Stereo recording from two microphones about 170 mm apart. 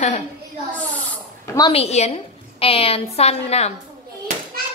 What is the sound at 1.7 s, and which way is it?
A woman's voice, 40° left (ahead or behind).